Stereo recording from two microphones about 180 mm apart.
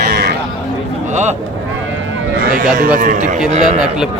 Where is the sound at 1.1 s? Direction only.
40° right (ahead or behind).